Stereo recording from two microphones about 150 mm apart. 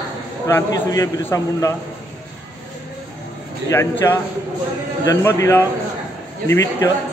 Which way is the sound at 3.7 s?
15° left (ahead or behind).